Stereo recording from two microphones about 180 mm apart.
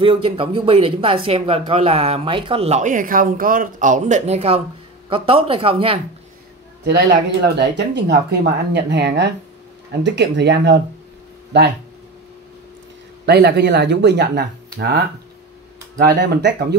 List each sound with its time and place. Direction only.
0.0 s speech: 30° right (ahead or behind)
7.4 s speech: 65° right (ahead or behind)
13.2 s speech: 70° right (ahead or behind)
16.0 s speech: 65° right (ahead or behind)